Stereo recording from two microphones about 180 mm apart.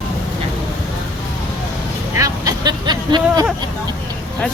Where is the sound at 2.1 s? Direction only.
20° right (ahead or behind).